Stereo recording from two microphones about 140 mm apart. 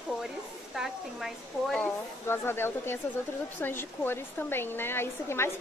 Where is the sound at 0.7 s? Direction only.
Centre (ahead or behind).